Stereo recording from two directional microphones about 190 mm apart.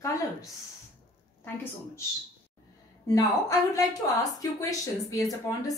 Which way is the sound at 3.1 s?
20° left (ahead or behind).